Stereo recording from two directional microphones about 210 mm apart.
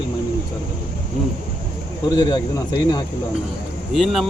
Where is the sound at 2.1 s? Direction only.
20° left (ahead or behind).